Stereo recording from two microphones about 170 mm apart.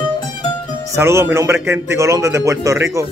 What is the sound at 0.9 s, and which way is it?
Music, 15° right (ahead or behind).